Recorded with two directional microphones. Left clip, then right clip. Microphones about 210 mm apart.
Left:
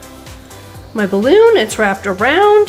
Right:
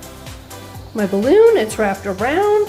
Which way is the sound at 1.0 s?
15° left (ahead or behind).